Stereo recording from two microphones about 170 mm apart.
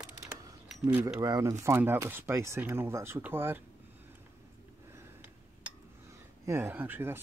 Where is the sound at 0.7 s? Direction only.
5° right (ahead or behind).